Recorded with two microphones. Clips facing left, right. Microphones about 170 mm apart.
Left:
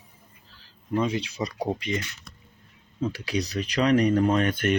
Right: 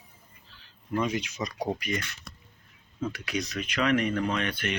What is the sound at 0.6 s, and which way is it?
Speech, 30° left (ahead or behind).